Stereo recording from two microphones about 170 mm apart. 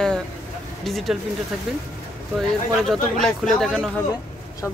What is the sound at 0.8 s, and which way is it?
Speech, centre (ahead or behind).